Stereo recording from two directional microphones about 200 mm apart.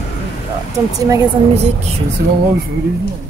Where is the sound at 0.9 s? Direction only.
15° right (ahead or behind).